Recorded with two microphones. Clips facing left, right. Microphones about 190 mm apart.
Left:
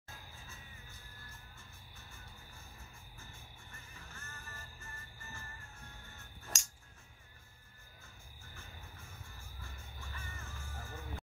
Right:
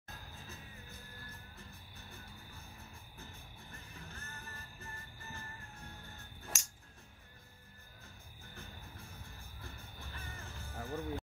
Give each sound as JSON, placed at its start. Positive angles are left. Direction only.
{"t": 0.5, "sound": "music", "side_deg": -35}
{"t": 6.5, "sound": "a sound", "side_deg": -5}
{"t": 8.5, "sound": "music", "side_deg": -35}